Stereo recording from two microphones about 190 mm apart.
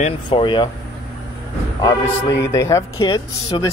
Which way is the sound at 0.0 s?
25° left (ahead or behind).